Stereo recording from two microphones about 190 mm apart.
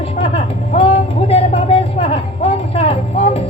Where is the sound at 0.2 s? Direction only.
30° left (ahead or behind).